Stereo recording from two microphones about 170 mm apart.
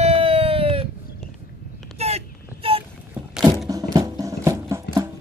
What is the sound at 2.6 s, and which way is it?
Vehicle, 35° right (ahead or behind).